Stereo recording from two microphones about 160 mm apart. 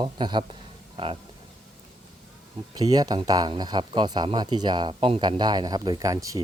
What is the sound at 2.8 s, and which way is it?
Speech, 25° right (ahead or behind).